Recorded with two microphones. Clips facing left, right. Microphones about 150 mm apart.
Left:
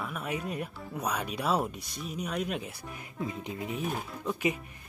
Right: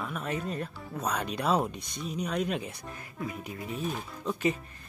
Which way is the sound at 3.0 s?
20° left (ahead or behind).